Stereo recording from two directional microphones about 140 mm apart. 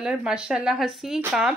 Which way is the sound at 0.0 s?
5° right (ahead or behind).